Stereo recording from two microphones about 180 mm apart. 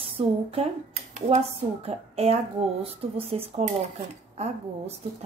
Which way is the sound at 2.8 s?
35° right (ahead or behind).